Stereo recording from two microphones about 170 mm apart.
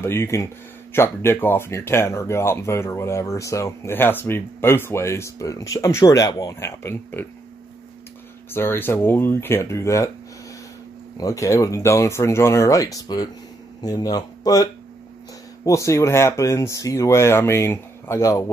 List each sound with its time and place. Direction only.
0.0 s speech: 15° left (ahead or behind)
8.5 s speech: 15° left (ahead or behind)
11.1 s speech: 20° left (ahead or behind)